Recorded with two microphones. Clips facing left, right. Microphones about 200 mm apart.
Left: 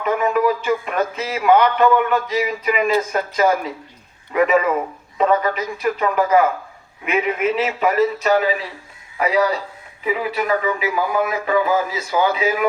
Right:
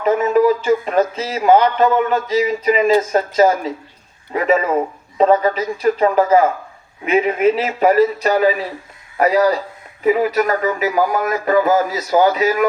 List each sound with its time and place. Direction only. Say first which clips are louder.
0.0 s speech: right 4 dB; 30° right (ahead or behind)